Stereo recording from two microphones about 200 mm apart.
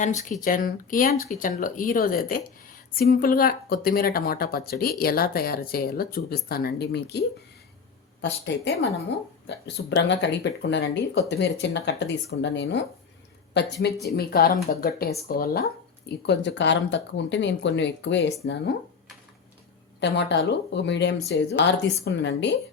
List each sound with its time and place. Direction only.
0.0 s a woman's voice: 35° left (ahead or behind); by 18.7 s 60° left (ahead or behind)
20.0 s speech: 60° left (ahead or behind)